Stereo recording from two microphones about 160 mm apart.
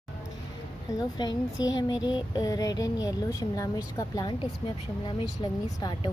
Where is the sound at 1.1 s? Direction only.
25° left (ahead or behind).